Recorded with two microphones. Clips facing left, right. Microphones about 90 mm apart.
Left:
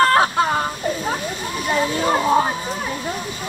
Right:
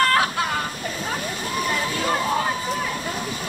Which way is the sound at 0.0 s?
30° left (ahead or behind).